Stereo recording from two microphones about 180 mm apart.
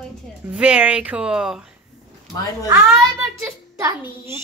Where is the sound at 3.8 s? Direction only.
15° right (ahead or behind).